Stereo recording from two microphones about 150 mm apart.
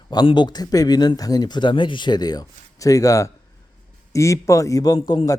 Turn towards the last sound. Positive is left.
turn(degrees=25)  # may be behind; listen again after turning